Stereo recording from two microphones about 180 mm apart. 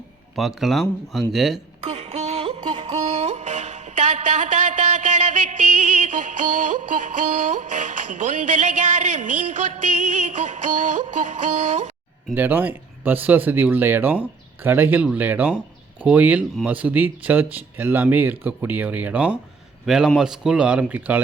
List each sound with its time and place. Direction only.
0.3 s speech: centre (ahead or behind)
1.8 s a sound: 35° right (ahead or behind)
12.3 s speech: 10° right (ahead or behind)